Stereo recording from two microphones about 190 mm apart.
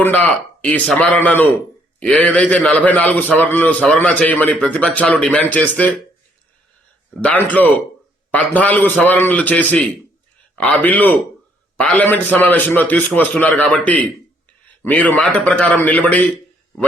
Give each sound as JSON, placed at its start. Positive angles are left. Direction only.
{"t": 0.0, "sound": "a man's voice", "side_deg": 10}
{"t": 7.2, "sound": "a man's voice", "side_deg": 10}